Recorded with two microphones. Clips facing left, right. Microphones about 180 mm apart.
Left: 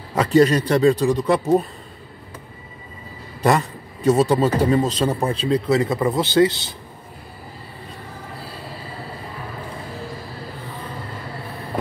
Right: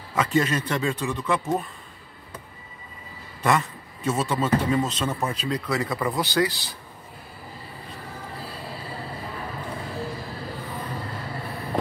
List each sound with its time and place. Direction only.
0.1 s speech: 35° left (ahead or behind)
3.4 s speech: 35° left (ahead or behind)